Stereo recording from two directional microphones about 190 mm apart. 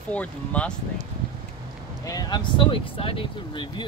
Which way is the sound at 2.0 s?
20° left (ahead or behind).